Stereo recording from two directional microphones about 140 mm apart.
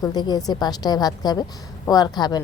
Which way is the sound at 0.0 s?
30° left (ahead or behind).